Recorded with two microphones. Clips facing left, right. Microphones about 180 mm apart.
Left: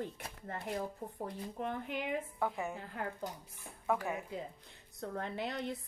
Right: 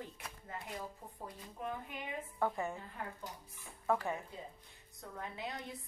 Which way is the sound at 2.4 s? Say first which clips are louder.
Even; 5° left (ahead or behind).